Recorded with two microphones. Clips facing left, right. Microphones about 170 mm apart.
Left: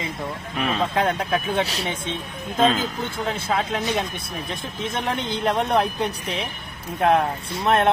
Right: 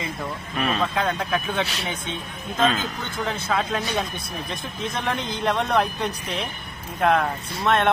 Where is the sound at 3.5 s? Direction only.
20° left (ahead or behind).